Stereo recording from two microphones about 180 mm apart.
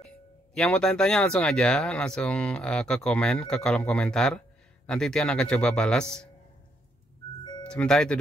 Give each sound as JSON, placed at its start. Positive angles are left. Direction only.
{"t": 0.6, "sound": "speech", "side_deg": 5}
{"t": 7.6, "sound": "speech", "side_deg": 5}